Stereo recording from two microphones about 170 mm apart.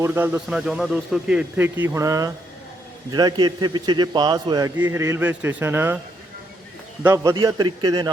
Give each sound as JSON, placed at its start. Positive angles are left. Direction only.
{"t": 0.0, "sound": "a man's voice", "side_deg": -15}
{"t": 7.0, "sound": "a man's voice", "side_deg": -15}